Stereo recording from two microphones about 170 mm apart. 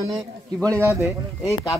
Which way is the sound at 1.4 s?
20° left (ahead or behind).